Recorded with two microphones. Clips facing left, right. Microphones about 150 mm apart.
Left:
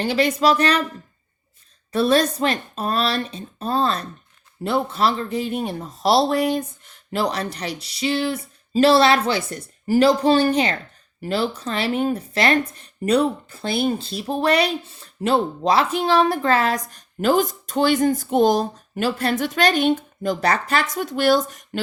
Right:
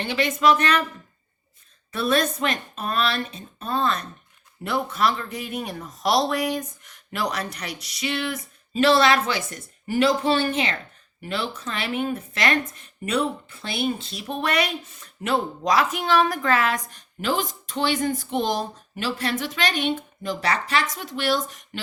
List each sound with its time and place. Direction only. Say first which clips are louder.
0.0 s speech: left 3 dB; 35° left (ahead or behind)
1.9 s speech: left 5 dB; 35° left (ahead or behind)